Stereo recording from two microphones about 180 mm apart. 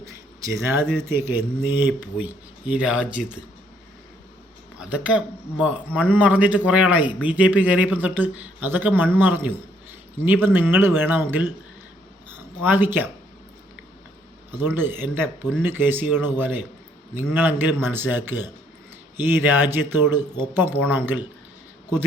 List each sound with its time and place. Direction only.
0.0 s a man's voice: 15° right (ahead or behind)
4.8 s a man's voice: 5° right (ahead or behind)
12.3 s a sound: 10° right (ahead or behind)
14.5 s a man's voice: 10° right (ahead or behind)